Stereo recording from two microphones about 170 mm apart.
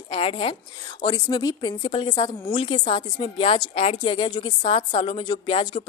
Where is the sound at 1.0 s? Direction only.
20° left (ahead or behind).